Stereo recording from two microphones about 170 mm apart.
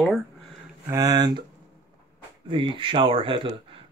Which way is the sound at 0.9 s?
20° right (ahead or behind).